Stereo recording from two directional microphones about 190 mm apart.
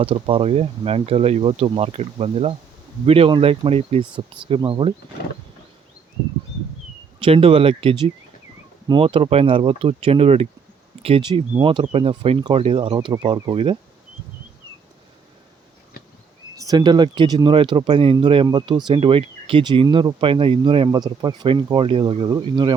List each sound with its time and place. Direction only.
0.0 s speech: 30° right (ahead or behind)
7.2 s speech: 30° right (ahead or behind)
16.6 s speech: 20° right (ahead or behind)